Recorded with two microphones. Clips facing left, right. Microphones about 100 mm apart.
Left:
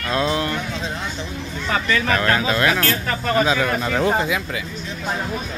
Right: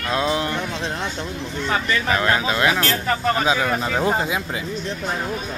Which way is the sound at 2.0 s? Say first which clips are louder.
Left 1 dB; 15° right (ahead or behind).